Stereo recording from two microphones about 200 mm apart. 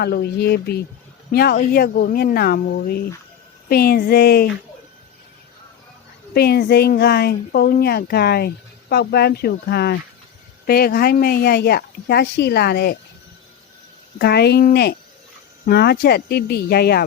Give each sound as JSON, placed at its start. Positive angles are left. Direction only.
{"t": 0.0, "sound": "speech", "side_deg": 55}
{"t": 6.3, "sound": "speech", "side_deg": 50}
{"t": 14.2, "sound": "speech", "side_deg": 55}